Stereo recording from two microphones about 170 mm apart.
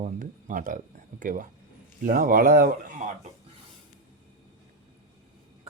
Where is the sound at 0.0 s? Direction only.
50° right (ahead or behind).